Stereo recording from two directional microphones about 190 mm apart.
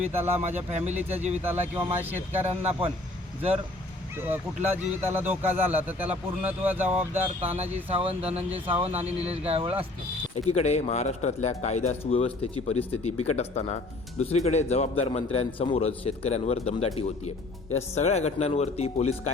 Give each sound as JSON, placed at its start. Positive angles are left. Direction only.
{"t": 0.1, "sound": "speech", "side_deg": -10}
{"t": 0.3, "sound": "speech", "side_deg": -35}
{"t": 1.4, "sound": "speech", "side_deg": -10}
{"t": 2.5, "sound": "speech", "side_deg": -35}
{"t": 4.2, "sound": "speech", "side_deg": -10}
{"t": 7.9, "sound": "speech", "side_deg": -30}
{"t": 10.3, "sound": "a man's voice", "side_deg": 35}